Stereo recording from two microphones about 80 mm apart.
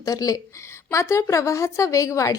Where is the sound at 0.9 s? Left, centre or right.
Left.